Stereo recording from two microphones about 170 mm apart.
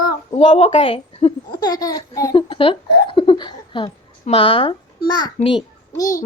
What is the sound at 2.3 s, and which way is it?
A woman's voice, 30° left (ahead or behind).